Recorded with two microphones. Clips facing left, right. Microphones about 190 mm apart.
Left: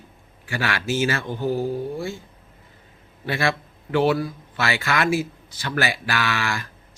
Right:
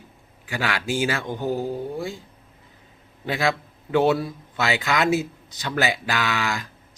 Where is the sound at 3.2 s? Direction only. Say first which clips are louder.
Even; 15° right (ahead or behind).